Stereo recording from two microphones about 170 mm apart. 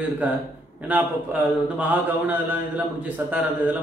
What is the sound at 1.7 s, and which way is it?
A man's voice, 10° right (ahead or behind).